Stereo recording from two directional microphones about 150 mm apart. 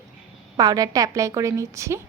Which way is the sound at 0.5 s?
25° right (ahead or behind).